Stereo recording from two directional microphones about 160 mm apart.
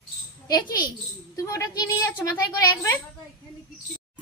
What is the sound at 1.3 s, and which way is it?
Speech, 20° left (ahead or behind).